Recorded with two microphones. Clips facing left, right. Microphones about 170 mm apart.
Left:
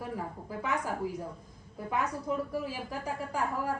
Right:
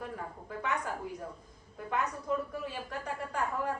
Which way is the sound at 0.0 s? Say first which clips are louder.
Left 3 dB; 5° left (ahead or behind).